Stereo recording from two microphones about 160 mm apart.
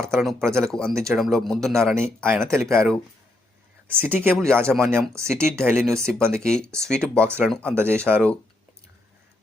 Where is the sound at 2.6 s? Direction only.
5° left (ahead or behind).